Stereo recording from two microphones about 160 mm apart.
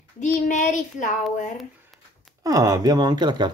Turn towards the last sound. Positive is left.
turn(degrees=-25)  # may be behind; listen again after turning